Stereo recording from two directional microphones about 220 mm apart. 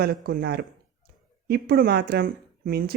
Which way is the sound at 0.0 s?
45° right (ahead or behind).